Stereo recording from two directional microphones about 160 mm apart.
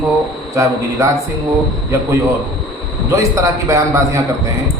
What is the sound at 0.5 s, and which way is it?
Speech, 20° right (ahead or behind).